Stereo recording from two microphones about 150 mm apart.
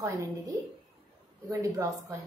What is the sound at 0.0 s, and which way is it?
Speech, 20° right (ahead or behind).